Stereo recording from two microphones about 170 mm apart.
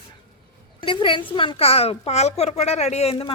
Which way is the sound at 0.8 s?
30° left (ahead or behind).